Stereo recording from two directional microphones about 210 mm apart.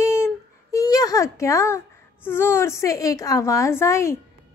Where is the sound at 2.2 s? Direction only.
10° left (ahead or behind).